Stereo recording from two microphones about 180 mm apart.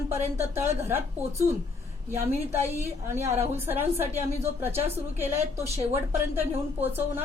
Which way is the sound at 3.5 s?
10° right (ahead or behind).